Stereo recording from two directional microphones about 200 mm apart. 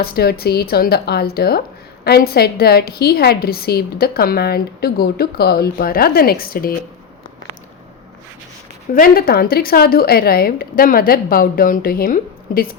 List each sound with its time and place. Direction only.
0.0 s a woman's voice: 50° left (ahead or behind)
8.9 s a woman's voice: 45° left (ahead or behind)